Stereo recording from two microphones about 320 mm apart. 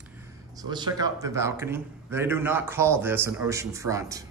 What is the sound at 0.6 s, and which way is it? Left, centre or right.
A man's voice, centre.